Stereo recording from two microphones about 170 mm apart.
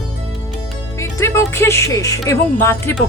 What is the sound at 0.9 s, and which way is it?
Speech, 15° left (ahead or behind).